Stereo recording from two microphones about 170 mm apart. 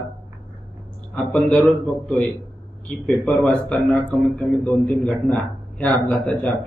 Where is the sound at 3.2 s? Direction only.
10° left (ahead or behind).